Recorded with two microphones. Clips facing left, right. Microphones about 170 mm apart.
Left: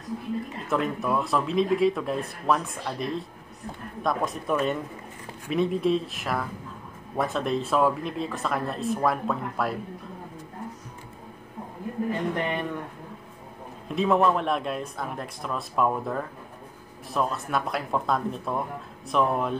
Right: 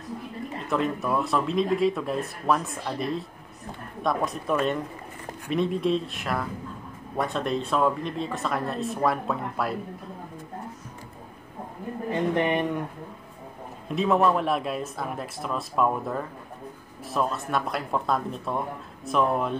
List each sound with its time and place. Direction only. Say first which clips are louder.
0.7 s speech: even; centre (ahead or behind)
12.1 s speech: right 6 dB; 20° right (ahead or behind)
13.8 s speech: even; centre (ahead or behind)